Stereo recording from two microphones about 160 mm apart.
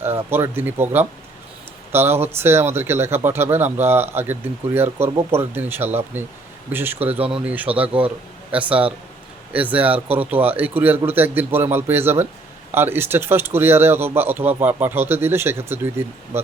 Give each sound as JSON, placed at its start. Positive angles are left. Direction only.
{"t": 0.0, "sound": "speech", "side_deg": -15}
{"t": 7.2, "sound": "speech", "side_deg": -35}
{"t": 7.4, "sound": "speech", "side_deg": -10}